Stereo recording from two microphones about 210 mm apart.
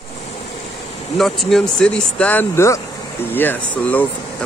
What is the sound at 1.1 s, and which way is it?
Speech, centre (ahead or behind).